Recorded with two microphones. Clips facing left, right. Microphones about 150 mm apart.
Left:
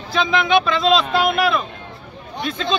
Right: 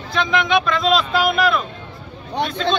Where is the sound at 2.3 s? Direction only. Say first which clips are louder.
Right 3 dB; 70° right (ahead or behind).